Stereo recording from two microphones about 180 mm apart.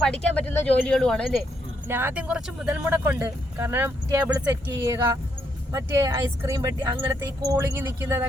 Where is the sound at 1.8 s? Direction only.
10° right (ahead or behind).